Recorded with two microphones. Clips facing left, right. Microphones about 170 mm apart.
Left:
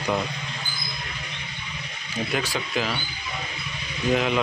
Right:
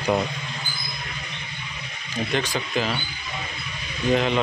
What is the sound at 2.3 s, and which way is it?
Speech, 5° left (ahead or behind).